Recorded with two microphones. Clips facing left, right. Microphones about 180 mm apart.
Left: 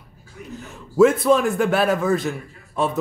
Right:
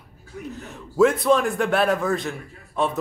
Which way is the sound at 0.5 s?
Centre (ahead or behind).